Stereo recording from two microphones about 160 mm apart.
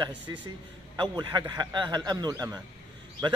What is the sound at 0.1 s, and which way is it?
Speech, 10° right (ahead or behind).